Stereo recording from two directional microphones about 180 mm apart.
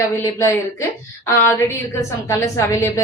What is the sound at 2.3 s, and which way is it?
Speech, 15° left (ahead or behind).